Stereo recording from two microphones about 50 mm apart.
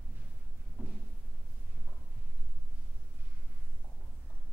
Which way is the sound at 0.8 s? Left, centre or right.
Right.